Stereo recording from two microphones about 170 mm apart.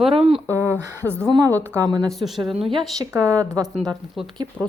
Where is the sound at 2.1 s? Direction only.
Centre (ahead or behind).